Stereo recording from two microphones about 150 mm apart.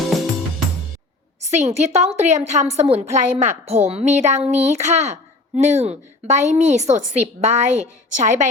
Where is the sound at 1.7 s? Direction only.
45° right (ahead or behind).